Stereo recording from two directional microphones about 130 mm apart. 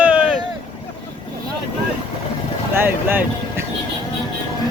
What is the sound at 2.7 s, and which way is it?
Speech, 15° right (ahead or behind).